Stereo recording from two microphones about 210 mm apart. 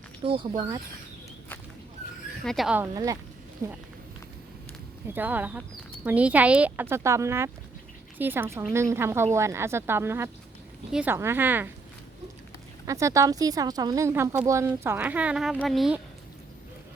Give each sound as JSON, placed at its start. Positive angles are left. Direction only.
{"t": 0.3, "sound": "speech", "side_deg": -25}
{"t": 2.4, "sound": "speech", "side_deg": 0}
{"t": 5.1, "sound": "speech", "side_deg": -10}
{"t": 12.8, "sound": "speech", "side_deg": -15}